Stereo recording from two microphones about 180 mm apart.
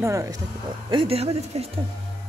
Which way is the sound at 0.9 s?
30° right (ahead or behind).